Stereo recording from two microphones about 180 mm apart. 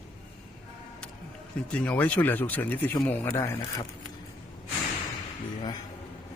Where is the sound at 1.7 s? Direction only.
10° left (ahead or behind).